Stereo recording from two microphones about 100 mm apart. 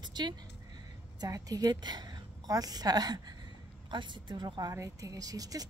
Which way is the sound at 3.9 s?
50° right (ahead or behind).